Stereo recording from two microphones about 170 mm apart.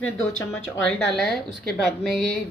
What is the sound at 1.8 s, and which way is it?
Speech, 5° left (ahead or behind).